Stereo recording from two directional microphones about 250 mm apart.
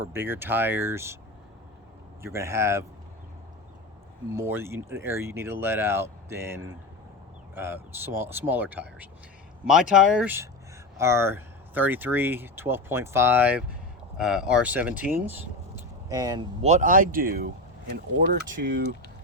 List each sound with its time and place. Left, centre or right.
0.0 s speech: centre
2.2 s speech: centre
4.3 s speech: centre
15.1 s vehicle: centre
16.6 s speech: right